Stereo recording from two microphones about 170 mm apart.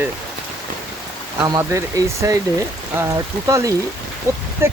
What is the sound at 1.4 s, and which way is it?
Speech, 20° right (ahead or behind).